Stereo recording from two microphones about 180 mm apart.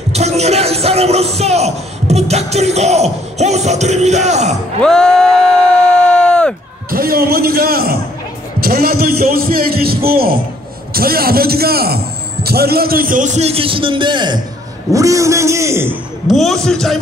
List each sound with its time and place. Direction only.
0.1 s a man's voice: 35° right (ahead or behind)
4.8 s a man's voice: 5° left (ahead or behind)
6.1 s a sound: 5° left (ahead or behind)
6.9 s a man's voice: 55° right (ahead or behind); by 15.9 s 15° right (ahead or behind)
15.9 s a man's voice: centre (ahead or behind)